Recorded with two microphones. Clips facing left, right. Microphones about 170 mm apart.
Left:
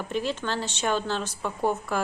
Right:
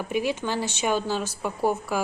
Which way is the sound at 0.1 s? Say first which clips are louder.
Right 3 dB; 10° right (ahead or behind).